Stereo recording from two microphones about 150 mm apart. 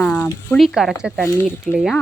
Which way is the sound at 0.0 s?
10° left (ahead or behind).